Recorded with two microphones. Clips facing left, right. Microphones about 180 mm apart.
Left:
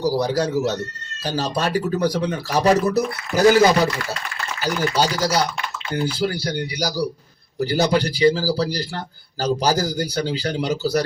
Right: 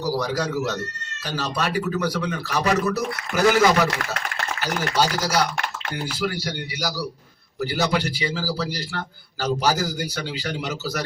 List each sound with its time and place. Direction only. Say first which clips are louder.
0.0 s speech: left 4 dB; 30° left (ahead or behind)
3.8 s speech: left 1 dB; 70° right (ahead or behind)
5.2 s speech: left 2 dB; 30° left (ahead or behind)